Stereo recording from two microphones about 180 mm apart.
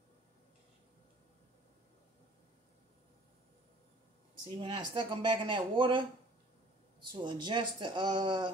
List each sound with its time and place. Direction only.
4.6 s speech: 25° right (ahead or behind)